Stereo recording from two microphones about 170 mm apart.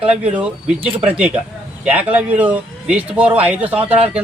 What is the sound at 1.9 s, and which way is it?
A man's voice, 10° right (ahead or behind).